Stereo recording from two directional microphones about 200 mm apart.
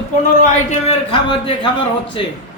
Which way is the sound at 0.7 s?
30° left (ahead or behind).